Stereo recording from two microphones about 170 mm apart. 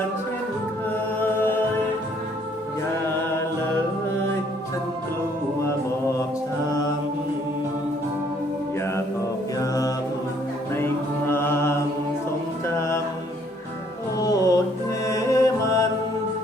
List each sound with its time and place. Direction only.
1.2 s music: 10° left (ahead or behind)
9.6 s mantra: 20° left (ahead or behind)
12.6 s music: 15° left (ahead or behind)
14.2 s music: 20° left (ahead or behind)
15.0 s mantra: 20° left (ahead or behind)